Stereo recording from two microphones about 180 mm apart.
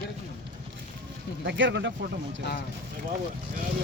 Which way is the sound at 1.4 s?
85° right.